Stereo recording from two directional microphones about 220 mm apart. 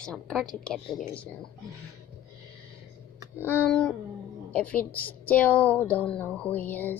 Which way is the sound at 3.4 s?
10° left (ahead or behind).